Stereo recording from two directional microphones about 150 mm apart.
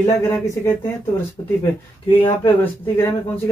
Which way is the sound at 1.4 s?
35° left (ahead or behind).